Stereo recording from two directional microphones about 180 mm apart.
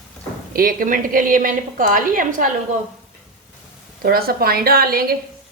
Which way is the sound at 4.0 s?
55° right (ahead or behind).